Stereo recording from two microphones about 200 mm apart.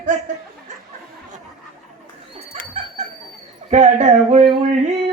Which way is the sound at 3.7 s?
35° right (ahead or behind).